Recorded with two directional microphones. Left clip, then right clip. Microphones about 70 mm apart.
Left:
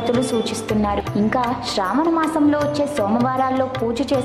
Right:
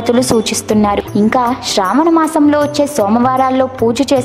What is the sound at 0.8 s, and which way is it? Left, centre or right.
A woman's voice, right.